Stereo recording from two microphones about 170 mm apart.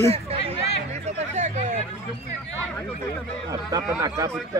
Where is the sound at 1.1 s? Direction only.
40° right (ahead or behind).